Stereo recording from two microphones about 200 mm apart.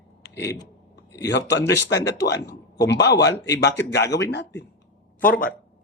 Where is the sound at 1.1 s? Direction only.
15° left (ahead or behind).